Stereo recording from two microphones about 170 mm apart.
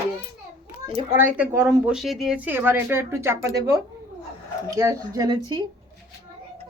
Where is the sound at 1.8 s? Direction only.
Centre (ahead or behind); by 5.6 s 20° right (ahead or behind).